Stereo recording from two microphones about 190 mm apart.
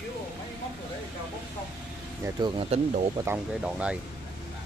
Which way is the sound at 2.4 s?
30° right (ahead or behind).